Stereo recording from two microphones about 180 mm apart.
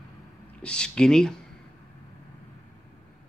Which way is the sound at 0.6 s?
5° left (ahead or behind).